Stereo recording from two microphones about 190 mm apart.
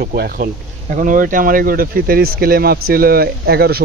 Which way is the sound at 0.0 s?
50° right (ahead or behind).